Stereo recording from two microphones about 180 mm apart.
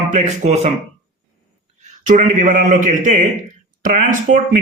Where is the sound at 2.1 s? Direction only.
45° right (ahead or behind).